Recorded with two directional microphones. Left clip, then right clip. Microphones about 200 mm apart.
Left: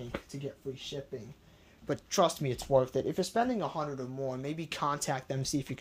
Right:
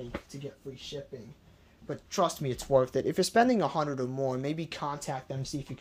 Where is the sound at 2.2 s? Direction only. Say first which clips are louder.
Right 1 dB; 5° left (ahead or behind).